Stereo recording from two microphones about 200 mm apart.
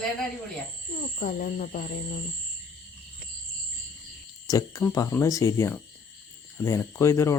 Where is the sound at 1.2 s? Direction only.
45° left (ahead or behind).